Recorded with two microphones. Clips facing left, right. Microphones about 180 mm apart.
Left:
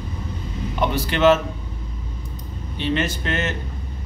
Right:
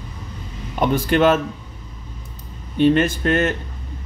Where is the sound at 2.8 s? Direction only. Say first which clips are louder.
Right 8 dB; 50° right (ahead or behind).